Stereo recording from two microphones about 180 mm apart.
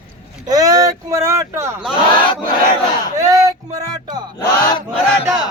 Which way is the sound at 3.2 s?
20° right (ahead or behind).